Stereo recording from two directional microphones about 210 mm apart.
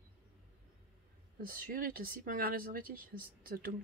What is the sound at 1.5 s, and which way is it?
Speech, 45° right (ahead or behind).